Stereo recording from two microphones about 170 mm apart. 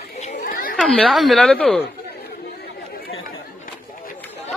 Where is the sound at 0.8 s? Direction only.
Centre (ahead or behind).